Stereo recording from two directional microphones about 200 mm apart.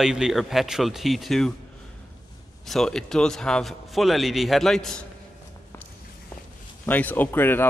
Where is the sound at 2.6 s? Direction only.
Centre (ahead or behind).